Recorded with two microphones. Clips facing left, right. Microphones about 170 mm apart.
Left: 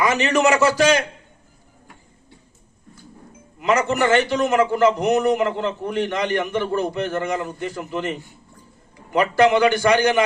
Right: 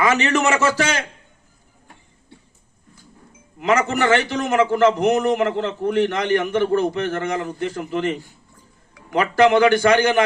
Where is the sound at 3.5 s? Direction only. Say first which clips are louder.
Even; 50° right (ahead or behind).